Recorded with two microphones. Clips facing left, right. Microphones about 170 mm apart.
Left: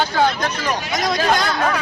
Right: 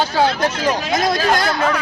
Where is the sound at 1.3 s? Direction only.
50° right (ahead or behind).